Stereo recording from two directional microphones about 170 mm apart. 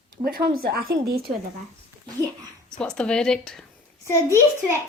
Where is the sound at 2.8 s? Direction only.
5° left (ahead or behind).